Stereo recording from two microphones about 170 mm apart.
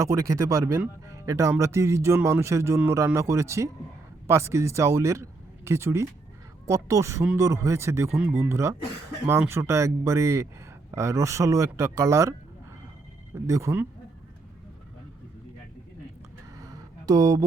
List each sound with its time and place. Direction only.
0.0 s speech: 20° right (ahead or behind)
13.3 s speech: 15° right (ahead or behind)
16.6 s a sound: 20° right (ahead or behind)